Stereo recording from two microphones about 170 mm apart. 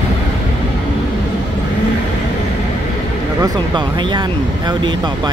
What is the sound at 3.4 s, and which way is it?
Speech, 25° right (ahead or behind).